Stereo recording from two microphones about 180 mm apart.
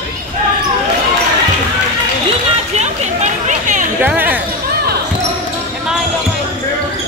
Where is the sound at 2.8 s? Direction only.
40° right (ahead or behind).